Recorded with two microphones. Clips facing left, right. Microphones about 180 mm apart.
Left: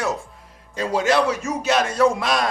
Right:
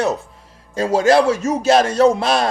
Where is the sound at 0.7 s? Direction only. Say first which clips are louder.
Right 6 dB; 35° right (ahead or behind).